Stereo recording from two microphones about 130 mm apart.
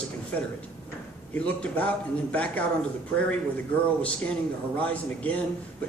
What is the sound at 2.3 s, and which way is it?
Speech, 10° left (ahead or behind).